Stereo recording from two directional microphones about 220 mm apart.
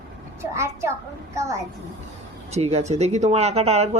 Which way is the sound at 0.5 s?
15° right (ahead or behind).